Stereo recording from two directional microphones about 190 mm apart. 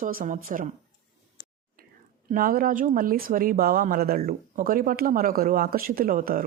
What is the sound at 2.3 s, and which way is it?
Speech, 50° right (ahead or behind).